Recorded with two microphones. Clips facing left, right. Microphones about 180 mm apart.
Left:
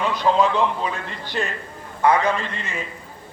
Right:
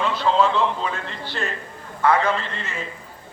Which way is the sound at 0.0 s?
15° left (ahead or behind).